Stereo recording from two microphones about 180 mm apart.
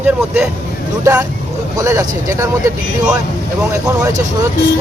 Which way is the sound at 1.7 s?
20° right (ahead or behind).